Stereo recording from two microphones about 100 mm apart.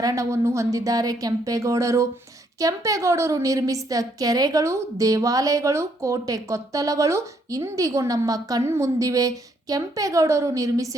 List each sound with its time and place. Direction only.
0.0 s a woman's voice: 35° right (ahead or behind)